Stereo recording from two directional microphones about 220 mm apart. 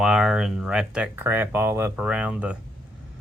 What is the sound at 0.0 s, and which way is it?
Speech, 5° right (ahead or behind).